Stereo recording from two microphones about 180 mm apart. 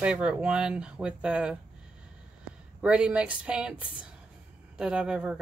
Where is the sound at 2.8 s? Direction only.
5° right (ahead or behind).